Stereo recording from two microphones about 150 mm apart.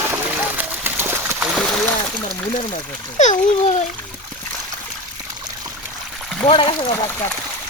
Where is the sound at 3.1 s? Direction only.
50° left (ahead or behind).